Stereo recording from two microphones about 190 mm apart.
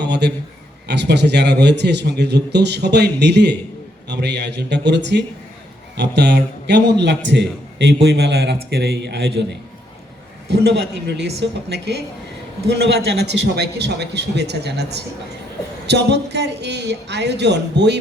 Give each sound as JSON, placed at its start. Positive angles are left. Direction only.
{"t": 0.0, "sound": "a sound", "side_deg": -60}
{"t": 0.9, "sound": "a man's voice", "side_deg": -65}
{"t": 10.5, "sound": "a man's voice", "side_deg": -60}
{"t": 13.1, "sound": "a man's voice", "side_deg": -60}